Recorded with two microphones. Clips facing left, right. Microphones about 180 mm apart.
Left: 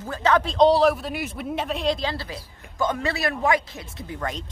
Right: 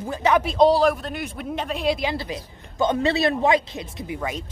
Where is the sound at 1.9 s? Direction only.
15° right (ahead or behind).